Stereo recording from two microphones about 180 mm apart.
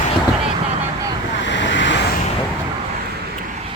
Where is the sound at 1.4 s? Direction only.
90° left.